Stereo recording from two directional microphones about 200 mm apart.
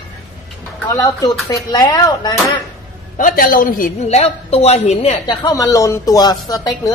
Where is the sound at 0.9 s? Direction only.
20° left (ahead or behind).